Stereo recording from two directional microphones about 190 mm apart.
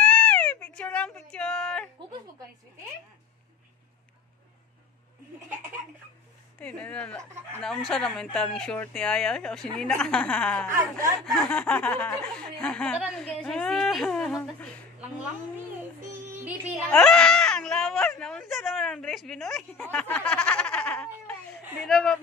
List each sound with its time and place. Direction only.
0.0 s a sound: 5° left (ahead or behind)
6.6 s speech: 5° left (ahead or behind)
10.7 s speech: 15° right (ahead or behind)
11.2 s speech: centre (ahead or behind)
16.9 s speech: 5° left (ahead or behind)